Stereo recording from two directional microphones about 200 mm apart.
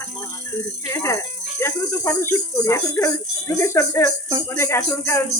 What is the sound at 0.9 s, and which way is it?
Speech, 15° left (ahead or behind).